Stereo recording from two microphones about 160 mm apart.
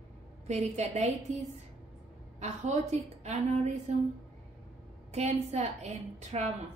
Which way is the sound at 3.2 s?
45° right (ahead or behind).